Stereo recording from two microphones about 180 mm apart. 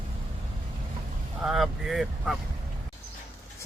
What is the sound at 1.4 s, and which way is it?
Speech, centre (ahead or behind).